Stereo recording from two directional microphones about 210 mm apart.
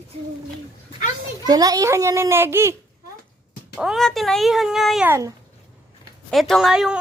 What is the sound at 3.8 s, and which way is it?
A woman's voice, centre (ahead or behind).